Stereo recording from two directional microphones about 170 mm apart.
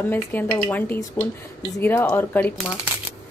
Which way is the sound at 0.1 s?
10° left (ahead or behind).